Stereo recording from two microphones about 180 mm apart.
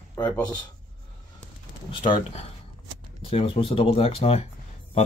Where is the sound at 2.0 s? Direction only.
30° left (ahead or behind).